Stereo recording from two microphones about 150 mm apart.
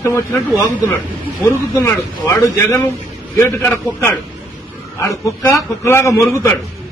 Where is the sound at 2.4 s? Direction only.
20° left (ahead or behind).